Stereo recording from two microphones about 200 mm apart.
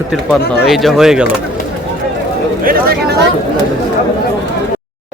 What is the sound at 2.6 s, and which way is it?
Speech, 45° right (ahead or behind).